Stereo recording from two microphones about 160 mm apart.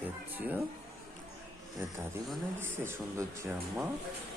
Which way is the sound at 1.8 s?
15° right (ahead or behind).